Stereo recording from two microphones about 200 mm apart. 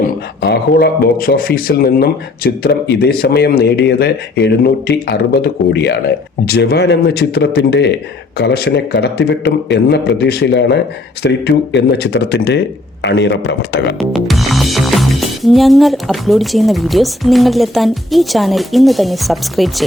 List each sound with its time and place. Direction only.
0.4 s speech: 55° left (ahead or behind)
14.1 s music: centre (ahead or behind)